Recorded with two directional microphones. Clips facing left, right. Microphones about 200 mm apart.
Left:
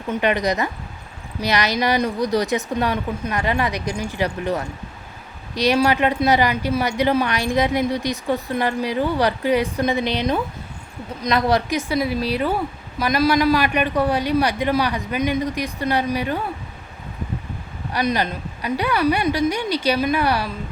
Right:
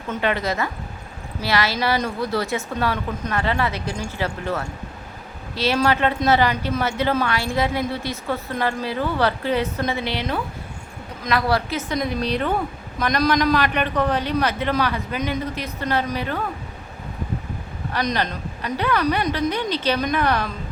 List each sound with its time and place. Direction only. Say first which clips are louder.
0.1 s a woman's voice: left 3 dB; 15° left (ahead or behind)
17.9 s a woman's voice: left 2 dB; 10° left (ahead or behind)